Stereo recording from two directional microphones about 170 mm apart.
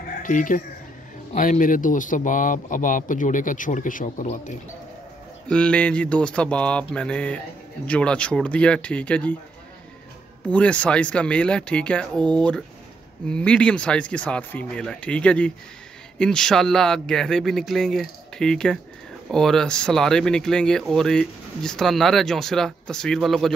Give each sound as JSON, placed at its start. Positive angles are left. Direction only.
{"t": 0.2, "sound": "speech", "side_deg": 50}
{"t": 5.5, "sound": "mantra", "side_deg": 5}
{"t": 10.4, "sound": "mantra", "side_deg": 10}
{"t": 16.2, "sound": "speech", "side_deg": 5}